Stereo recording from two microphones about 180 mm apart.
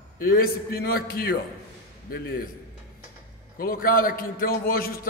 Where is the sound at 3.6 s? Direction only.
55° left (ahead or behind).